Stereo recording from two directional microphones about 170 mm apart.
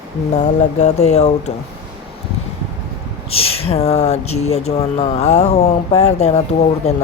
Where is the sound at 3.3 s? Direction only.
35° left (ahead or behind).